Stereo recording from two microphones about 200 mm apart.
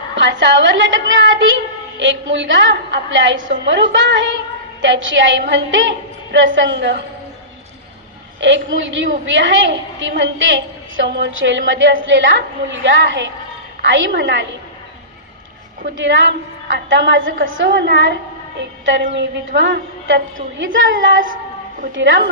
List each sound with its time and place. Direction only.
0.2 s a woman's voice: 65° right (ahead or behind)
8.4 s a woman's voice: 65° right (ahead or behind)
16.0 s a woman's voice: 65° right (ahead or behind)
19.1 s a woman's voice: 65° right (ahead or behind)
20.7 s a woman's voice: 70° right (ahead or behind)